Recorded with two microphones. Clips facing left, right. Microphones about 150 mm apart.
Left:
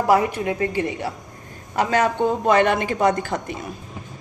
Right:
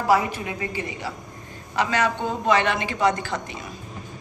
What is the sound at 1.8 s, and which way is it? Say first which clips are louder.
A man's voice: left 4 dB; 45° left (ahead or behind).